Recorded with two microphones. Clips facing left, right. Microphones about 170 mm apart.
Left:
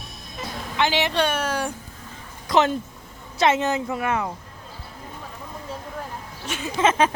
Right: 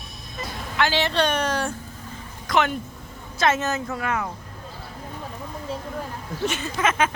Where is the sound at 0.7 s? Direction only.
20° left (ahead or behind).